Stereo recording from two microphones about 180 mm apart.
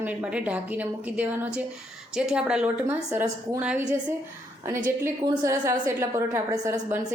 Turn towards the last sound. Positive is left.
turn(degrees=-15)  # may be behind; listen again after turning